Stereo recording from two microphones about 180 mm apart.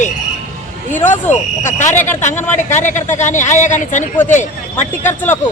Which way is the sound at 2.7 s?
45° left (ahead or behind).